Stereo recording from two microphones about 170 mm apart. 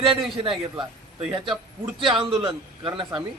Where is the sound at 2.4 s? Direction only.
30° right (ahead or behind).